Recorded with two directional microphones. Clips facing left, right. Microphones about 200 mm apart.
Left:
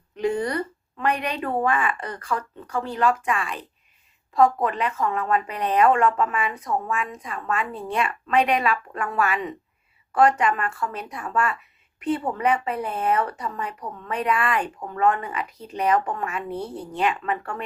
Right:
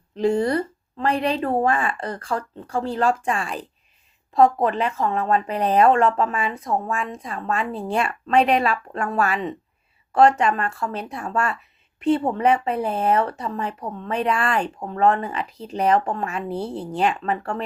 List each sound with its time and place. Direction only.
0.2 s speech: 30° right (ahead or behind)